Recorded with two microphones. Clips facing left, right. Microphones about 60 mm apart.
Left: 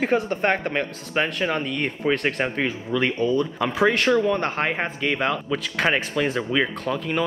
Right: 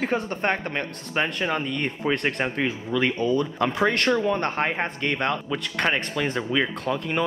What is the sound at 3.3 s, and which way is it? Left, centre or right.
Speech, centre.